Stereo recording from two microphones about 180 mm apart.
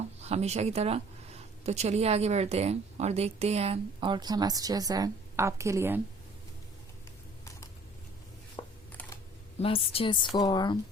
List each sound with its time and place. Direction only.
0.2 s speech: 35° right (ahead or behind); by 6.0 s 15° right (ahead or behind)
8.6 s a sound: 25° left (ahead or behind)
9.6 s a woman's voice: 35° left (ahead or behind)